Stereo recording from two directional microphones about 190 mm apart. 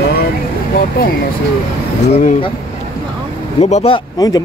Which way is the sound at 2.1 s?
35° left (ahead or behind).